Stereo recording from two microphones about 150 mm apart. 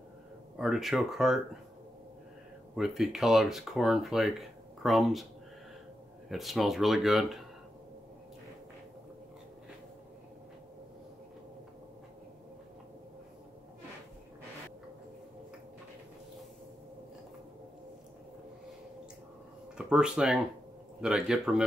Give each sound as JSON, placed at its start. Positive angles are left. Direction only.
{"t": 0.6, "sound": "speech", "side_deg": 0}
{"t": 2.7, "sound": "speech", "side_deg": 0}
{"t": 6.2, "sound": "speech", "side_deg": 0}
{"t": 19.8, "sound": "speech", "side_deg": -5}